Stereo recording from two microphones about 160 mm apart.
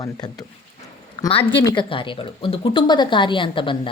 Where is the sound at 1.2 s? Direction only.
30° left (ahead or behind).